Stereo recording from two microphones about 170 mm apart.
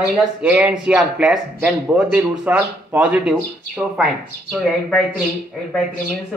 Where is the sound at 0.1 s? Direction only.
10° right (ahead or behind).